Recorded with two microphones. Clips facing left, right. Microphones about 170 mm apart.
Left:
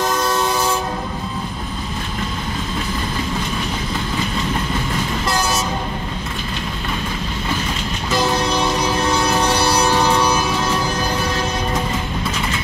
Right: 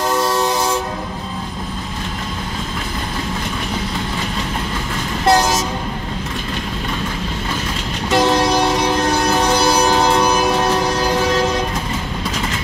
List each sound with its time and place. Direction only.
5.2 s vehicle: 85° right
10.2 s train: 60° right (ahead or behind); by 11.1 s 75° right (ahead or behind)